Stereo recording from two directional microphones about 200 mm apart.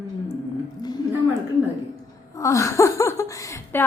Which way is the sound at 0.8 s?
20° left (ahead or behind).